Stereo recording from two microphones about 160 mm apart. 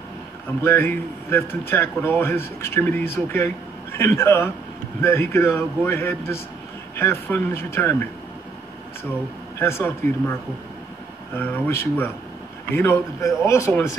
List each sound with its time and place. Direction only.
0.7 s speech: 15° left (ahead or behind)
9.6 s speech: 15° left (ahead or behind)
11.3 s speech: 15° left (ahead or behind)